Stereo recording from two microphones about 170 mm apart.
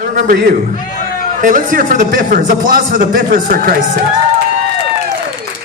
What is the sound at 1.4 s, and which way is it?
A man's voice, 50° right (ahead or behind).